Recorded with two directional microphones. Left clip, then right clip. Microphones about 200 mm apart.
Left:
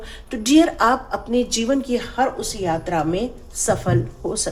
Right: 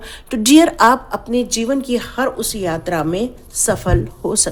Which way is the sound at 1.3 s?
25° right (ahead or behind).